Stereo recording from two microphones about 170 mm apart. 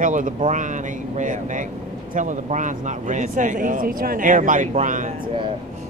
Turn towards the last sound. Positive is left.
turn(degrees=-50)  # may be behind; listen again after turning